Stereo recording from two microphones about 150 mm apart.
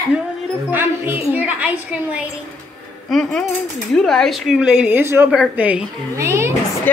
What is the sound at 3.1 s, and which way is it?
A woman's voice, 5° left (ahead or behind).